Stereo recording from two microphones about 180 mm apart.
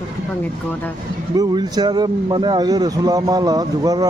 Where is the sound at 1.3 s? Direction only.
20° right (ahead or behind).